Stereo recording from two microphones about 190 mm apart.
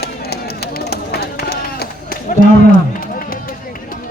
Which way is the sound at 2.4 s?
50° left (ahead or behind).